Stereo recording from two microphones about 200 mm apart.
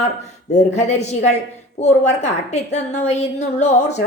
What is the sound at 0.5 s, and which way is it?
A woman's voice, 35° left (ahead or behind).